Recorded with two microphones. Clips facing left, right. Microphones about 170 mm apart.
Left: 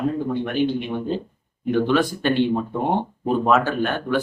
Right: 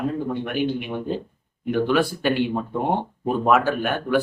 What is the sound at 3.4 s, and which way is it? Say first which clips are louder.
Speech: right 1 dB; 10° right (ahead or behind).